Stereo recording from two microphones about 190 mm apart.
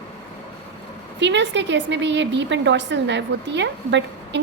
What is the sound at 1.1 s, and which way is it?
A woman's voice, 70° right (ahead or behind).